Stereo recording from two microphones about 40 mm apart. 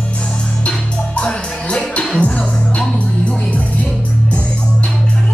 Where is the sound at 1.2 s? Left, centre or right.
Left.